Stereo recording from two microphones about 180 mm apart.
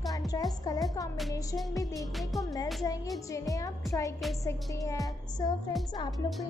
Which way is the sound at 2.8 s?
20° left (ahead or behind).